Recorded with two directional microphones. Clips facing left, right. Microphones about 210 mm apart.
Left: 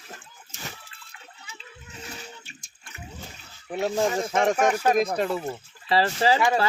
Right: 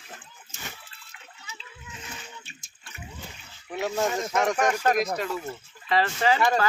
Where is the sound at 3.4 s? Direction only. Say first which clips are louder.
Left 3 dB; 35° left (ahead or behind).